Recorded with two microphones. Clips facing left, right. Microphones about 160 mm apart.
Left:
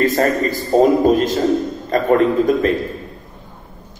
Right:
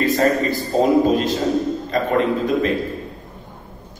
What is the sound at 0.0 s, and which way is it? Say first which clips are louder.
A man's voice: left 1 dB; 45° left (ahead or behind).